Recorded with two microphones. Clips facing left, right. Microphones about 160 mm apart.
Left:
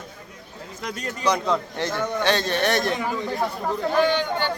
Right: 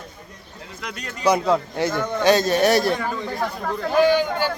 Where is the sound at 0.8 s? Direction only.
40° left (ahead or behind).